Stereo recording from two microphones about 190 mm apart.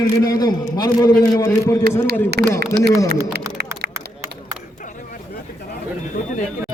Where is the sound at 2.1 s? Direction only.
60° right (ahead or behind).